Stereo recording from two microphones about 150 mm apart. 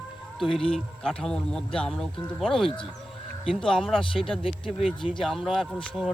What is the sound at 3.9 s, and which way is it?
Speech, 35° left (ahead or behind).